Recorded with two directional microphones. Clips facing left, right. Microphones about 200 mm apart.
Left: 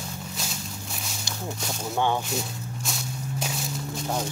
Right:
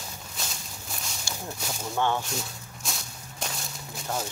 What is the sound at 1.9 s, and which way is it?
Speech, 15° left (ahead or behind).